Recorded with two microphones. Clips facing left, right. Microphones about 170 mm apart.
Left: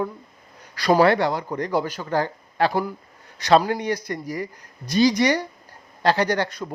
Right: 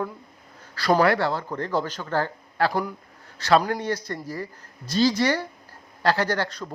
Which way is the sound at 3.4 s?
20° left (ahead or behind).